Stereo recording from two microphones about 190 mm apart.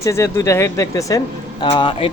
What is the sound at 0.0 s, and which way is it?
Speech, 15° left (ahead or behind).